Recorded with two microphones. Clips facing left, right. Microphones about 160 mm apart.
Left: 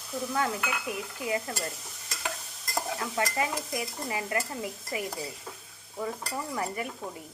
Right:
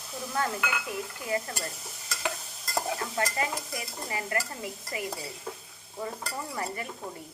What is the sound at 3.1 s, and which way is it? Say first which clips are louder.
Stir: left 3 dB; 20° left (ahead or behind).